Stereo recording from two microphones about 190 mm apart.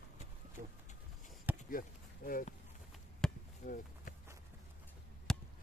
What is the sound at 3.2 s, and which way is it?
Chop, 5° left (ahead or behind).